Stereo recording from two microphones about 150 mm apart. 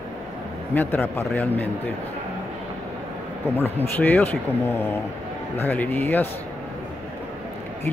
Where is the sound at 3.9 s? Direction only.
10° left (ahead or behind).